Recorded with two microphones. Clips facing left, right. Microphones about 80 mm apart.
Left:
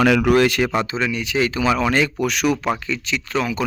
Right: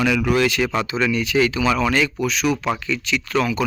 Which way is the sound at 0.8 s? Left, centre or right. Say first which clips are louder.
Right 2 dB; left.